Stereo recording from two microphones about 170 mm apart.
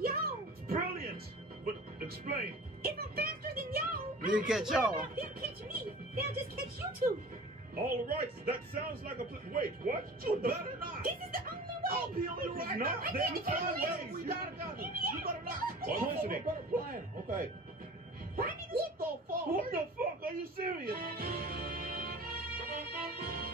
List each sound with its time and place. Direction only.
0.0 s music: 60° right (ahead or behind)
2.8 s music: 60° right (ahead or behind)
4.3 s speech: 5° right (ahead or behind)
5.7 s music: 65° right (ahead or behind)
7.0 s a man's voice: 55° right (ahead or behind)